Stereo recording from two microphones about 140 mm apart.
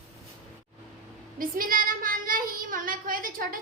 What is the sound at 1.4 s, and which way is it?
Child singing, 80° right.